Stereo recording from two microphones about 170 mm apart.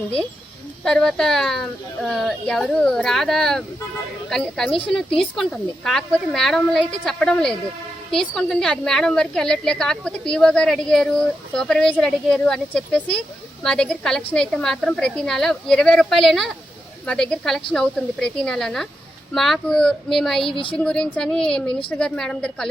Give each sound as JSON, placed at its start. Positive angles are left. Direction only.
{"t": 0.9, "sound": "speech", "side_deg": 5}
{"t": 20.5, "sound": "a woman's voice", "side_deg": 30}
{"t": 20.7, "sound": "speech", "side_deg": 5}